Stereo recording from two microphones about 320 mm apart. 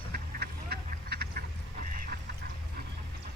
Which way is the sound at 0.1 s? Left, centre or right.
Right.